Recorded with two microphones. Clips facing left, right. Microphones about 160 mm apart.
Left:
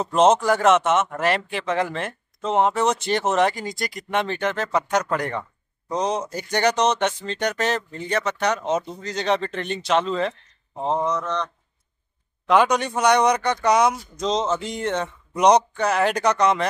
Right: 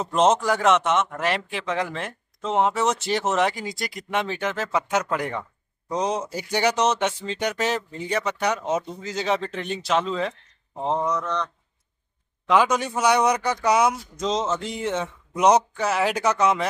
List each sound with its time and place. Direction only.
0.0 s a man's voice: centre (ahead or behind)
10.8 s mantra: 15° left (ahead or behind)
11.2 s speech: 25° left (ahead or behind)
12.4 s a man's voice: centre (ahead or behind)